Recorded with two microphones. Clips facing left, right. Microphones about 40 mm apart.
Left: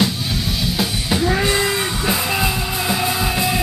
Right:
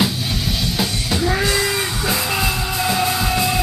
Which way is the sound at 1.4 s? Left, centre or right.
Left.